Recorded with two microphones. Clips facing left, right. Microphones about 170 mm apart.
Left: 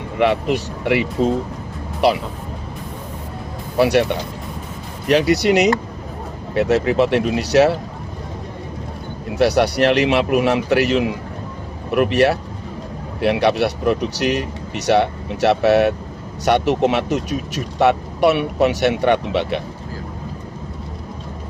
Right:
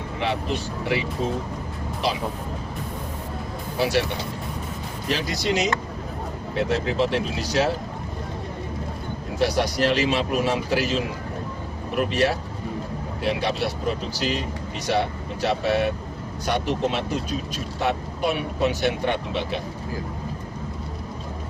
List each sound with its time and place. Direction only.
0.2 s speech: 70° left (ahead or behind)
3.8 s speech: 65° left (ahead or behind)
5.0 s speech: 70° left (ahead or behind)
9.4 s speech: 70° left (ahead or behind)